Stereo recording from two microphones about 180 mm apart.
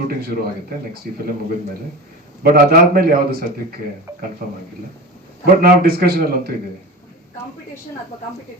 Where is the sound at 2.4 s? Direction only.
55° right (ahead or behind).